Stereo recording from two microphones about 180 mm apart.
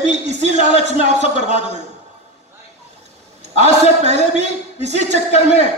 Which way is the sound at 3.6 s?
40° right (ahead or behind).